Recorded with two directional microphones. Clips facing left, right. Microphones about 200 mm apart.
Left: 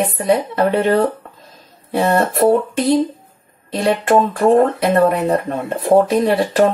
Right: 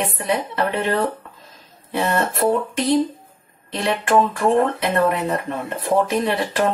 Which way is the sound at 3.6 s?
40° left (ahead or behind).